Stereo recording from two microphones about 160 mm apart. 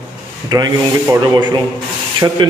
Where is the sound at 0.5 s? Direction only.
25° right (ahead or behind).